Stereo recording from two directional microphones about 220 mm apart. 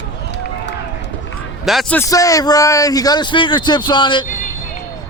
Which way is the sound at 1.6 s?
Centre (ahead or behind).